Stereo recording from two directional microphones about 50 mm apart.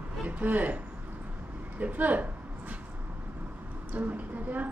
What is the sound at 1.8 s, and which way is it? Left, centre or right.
Speech, right.